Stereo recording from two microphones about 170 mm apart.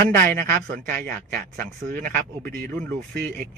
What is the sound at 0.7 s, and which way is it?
Speech, 60° right (ahead or behind).